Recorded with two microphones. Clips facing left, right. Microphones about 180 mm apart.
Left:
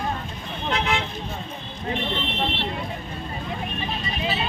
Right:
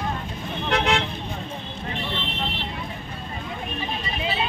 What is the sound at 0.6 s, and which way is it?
Vehicle, 75° right (ahead or behind).